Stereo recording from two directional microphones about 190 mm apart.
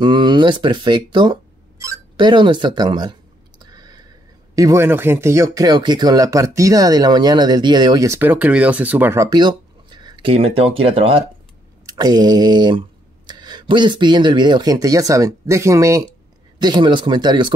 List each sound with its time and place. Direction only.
0.0 s speech: 25° right (ahead or behind)